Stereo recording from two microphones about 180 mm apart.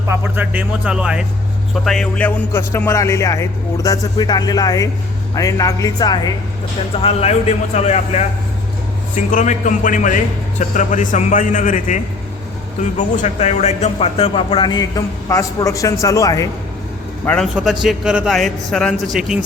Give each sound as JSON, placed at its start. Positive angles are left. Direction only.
{"t": 0.1, "sound": "a man's voice", "side_deg": -10}
{"t": 1.8, "sound": "music", "side_deg": 0}
{"t": 5.3, "sound": "speech", "side_deg": 20}
{"t": 7.0, "sound": "a man's voice", "side_deg": 35}
{"t": 13.0, "sound": "speech", "side_deg": 40}
{"t": 17.2, "sound": "a man's voice", "side_deg": 0}